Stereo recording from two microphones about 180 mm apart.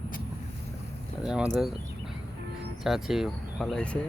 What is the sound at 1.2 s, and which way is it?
Speech, 5° right (ahead or behind).